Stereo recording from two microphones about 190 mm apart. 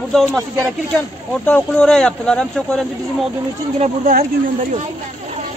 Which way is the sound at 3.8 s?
45° right (ahead or behind).